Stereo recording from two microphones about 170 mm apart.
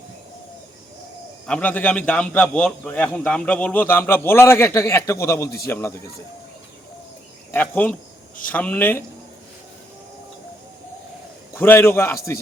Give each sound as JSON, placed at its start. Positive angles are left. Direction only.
{"t": 1.5, "sound": "a man's voice", "side_deg": 5}
{"t": 7.5, "sound": "a man's voice", "side_deg": 10}
{"t": 11.5, "sound": "a man's voice", "side_deg": 15}